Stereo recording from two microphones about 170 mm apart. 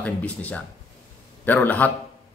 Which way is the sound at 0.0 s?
10° left (ahead or behind).